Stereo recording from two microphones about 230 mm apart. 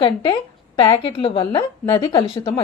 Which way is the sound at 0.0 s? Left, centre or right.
Left.